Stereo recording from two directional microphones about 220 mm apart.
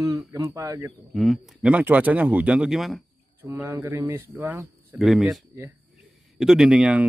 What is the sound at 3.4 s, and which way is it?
A man's voice, 15° right (ahead or behind).